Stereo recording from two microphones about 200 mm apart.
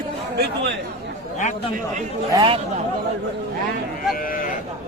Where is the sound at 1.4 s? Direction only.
35° left (ahead or behind).